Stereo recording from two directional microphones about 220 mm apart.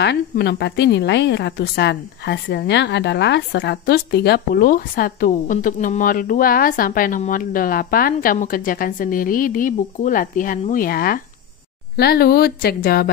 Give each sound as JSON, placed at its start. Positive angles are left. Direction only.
{"t": 0.0, "sound": "a woman's voice", "side_deg": 50}